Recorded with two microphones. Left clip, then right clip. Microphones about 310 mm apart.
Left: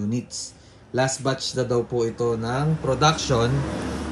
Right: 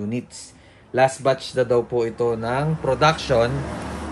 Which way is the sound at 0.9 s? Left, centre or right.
Centre.